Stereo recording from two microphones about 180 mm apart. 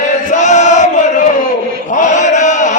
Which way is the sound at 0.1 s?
40° left (ahead or behind).